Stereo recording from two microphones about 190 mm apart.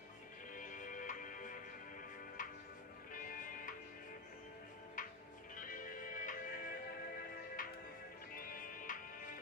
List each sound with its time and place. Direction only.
0.6 s music: 45° left (ahead or behind)
3.1 s music: 45° left (ahead or behind)
5.0 s music: 45° left (ahead or behind)